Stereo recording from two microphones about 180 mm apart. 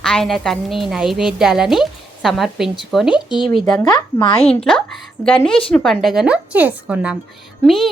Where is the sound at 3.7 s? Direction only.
25° left (ahead or behind).